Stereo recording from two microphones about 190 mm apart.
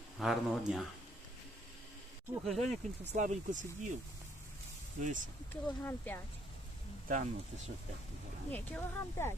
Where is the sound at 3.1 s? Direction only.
40° right (ahead or behind).